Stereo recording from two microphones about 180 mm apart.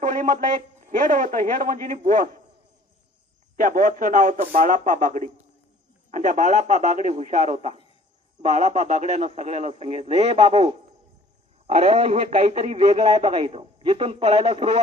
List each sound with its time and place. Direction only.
0.0 s a man's voice: 40° right (ahead or behind)
3.5 s a man's voice: 45° right (ahead or behind)